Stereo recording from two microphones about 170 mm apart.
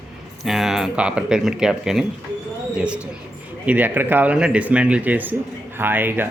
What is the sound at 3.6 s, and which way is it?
Speech, 10° right (ahead or behind).